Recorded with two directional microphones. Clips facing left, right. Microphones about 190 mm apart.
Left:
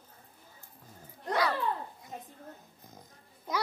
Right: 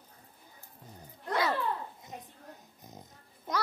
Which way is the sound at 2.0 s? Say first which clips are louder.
Left 1 dB; 20° right (ahead or behind).